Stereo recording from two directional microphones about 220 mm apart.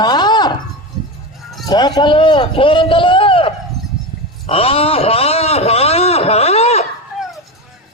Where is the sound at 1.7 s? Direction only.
20° left (ahead or behind).